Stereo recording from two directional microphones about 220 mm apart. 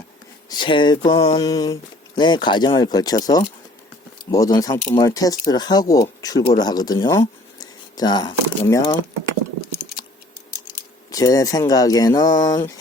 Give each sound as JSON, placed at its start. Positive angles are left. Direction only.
{"t": 0.5, "sound": "speech", "side_deg": 20}
{"t": 4.3, "sound": "speech", "side_deg": 15}
{"t": 11.1, "sound": "speech", "side_deg": 15}